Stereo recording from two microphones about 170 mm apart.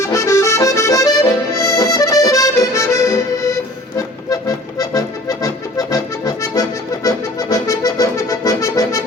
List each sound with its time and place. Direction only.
0.0 s accordion: 15° left (ahead or behind)